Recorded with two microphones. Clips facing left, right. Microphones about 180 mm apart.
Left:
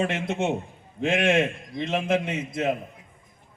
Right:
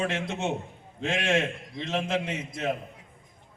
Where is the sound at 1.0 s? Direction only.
55° left (ahead or behind).